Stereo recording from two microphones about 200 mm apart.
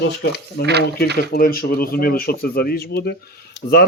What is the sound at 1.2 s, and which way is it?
Speech, 45° left (ahead or behind).